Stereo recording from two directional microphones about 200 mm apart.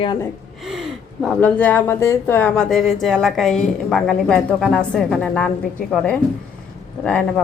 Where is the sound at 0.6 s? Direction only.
Centre (ahead or behind).